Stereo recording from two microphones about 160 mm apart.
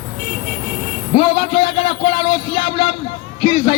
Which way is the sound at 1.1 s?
35° left (ahead or behind).